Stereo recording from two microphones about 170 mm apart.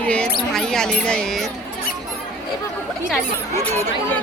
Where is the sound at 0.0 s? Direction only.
5° left (ahead or behind).